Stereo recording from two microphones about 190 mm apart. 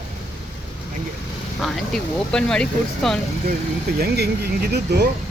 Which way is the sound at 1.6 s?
Centre (ahead or behind).